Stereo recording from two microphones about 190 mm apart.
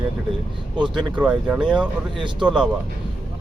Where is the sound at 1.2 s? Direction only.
5° right (ahead or behind).